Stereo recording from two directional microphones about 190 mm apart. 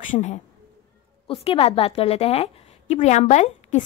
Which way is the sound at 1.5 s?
30° left (ahead or behind).